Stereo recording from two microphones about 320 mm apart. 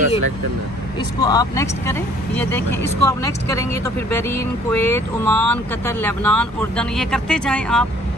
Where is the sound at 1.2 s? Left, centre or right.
Centre.